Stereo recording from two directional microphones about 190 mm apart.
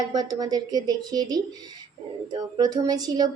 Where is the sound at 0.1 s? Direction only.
20° right (ahead or behind).